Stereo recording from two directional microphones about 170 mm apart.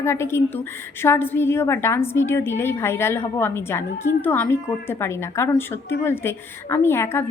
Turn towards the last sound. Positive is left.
turn(degrees=15)  # may be behind; listen again after turning